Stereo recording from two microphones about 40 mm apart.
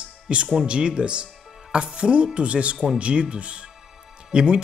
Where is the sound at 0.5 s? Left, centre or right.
Right.